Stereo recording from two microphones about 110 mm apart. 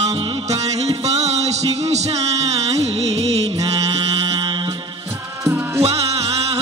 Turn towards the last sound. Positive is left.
turn(degrees=-70)  # may be behind; listen again after turning